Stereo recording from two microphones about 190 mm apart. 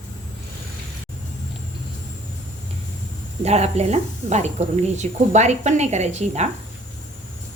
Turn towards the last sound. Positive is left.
turn(degrees=-35)  # may be behind; listen again after turning